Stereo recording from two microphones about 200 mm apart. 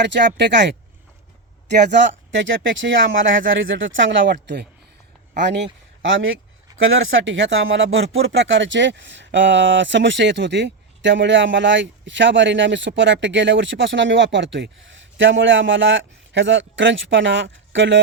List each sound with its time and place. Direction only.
0.3 s speech: 60° right (ahead or behind)
1.7 s speech: 60° right (ahead or behind)
5.5 s speech: 65° right (ahead or behind)